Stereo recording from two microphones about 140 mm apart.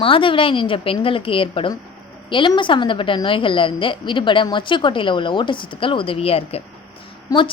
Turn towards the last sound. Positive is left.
turn(degrees=35)  # may be behind; listen again after turning